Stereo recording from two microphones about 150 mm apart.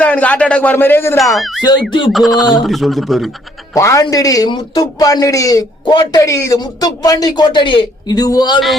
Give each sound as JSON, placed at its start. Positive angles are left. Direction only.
{"t": 0.0, "sound": "a man's voice", "side_deg": 10}
{"t": 1.1, "sound": "speech", "side_deg": 0}
{"t": 1.6, "sound": "speech", "side_deg": 30}
{"t": 2.1, "sound": "speech", "side_deg": 0}
{"t": 3.8, "sound": "a man's voice", "side_deg": 20}